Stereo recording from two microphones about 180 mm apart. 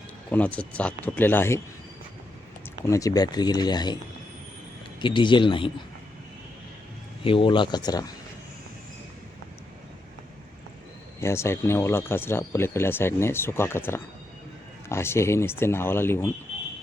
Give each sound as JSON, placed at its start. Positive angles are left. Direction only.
{"t": 0.3, "sound": "speech", "side_deg": 10}
{"t": 2.8, "sound": "speech", "side_deg": 20}
{"t": 4.9, "sound": "speech", "side_deg": 25}
{"t": 7.3, "sound": "speech", "side_deg": 30}
{"t": 11.2, "sound": "speech", "side_deg": 15}